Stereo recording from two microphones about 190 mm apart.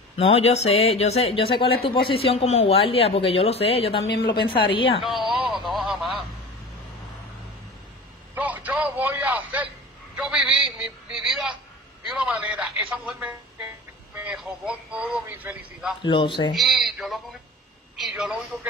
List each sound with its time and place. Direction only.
0.2 s a woman's voice: 35° left (ahead or behind)
5.0 s radio: centre (ahead or behind)
8.4 s a sound: 10° right (ahead or behind)
12.1 s music: 5° right (ahead or behind)
14.1 s a man's voice: 5° right (ahead or behind)
16.0 s a woman's voice: 25° left (ahead or behind)
16.5 s a man's voice: centre (ahead or behind)